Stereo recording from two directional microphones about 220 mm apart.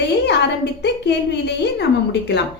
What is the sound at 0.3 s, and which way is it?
A woman's voice, 50° left (ahead or behind).